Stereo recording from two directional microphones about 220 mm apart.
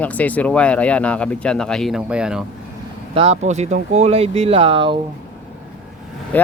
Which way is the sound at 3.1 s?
30° right (ahead or behind).